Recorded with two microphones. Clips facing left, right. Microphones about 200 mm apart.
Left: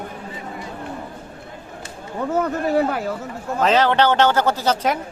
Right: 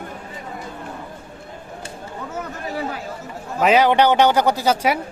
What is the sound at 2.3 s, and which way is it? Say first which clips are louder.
Speech: left 10 dB; 60° left (ahead or behind).